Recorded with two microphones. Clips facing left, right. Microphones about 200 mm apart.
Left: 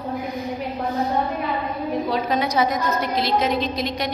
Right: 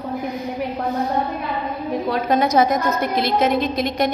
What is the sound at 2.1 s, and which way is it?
A woman's voice, 50° right (ahead or behind).